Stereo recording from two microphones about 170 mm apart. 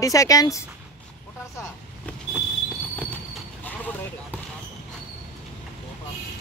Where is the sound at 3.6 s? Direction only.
10° left (ahead or behind).